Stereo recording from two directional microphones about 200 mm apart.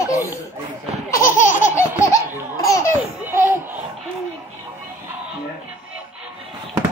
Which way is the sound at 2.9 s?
10° right (ahead or behind).